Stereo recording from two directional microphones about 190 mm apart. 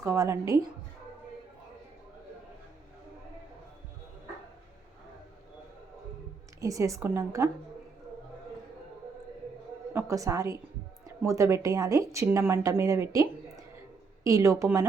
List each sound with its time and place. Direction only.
0.0 s speech: 15° right (ahead or behind)
6.6 s speech: 15° right (ahead or behind)
9.9 s a woman's voice: 15° right (ahead or behind)